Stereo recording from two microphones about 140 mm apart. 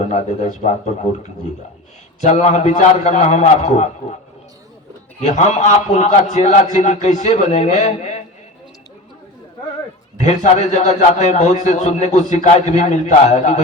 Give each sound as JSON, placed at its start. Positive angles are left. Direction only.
{"t": 0.0, "sound": "a man's voice", "side_deg": 55}
{"t": 2.2, "sound": "a man's voice", "side_deg": 55}
{"t": 5.2, "sound": "a man's voice", "side_deg": 55}
{"t": 10.2, "sound": "a man's voice", "side_deg": 55}